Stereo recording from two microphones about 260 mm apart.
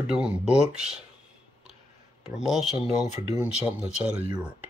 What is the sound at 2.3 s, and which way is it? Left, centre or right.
Speech, centre.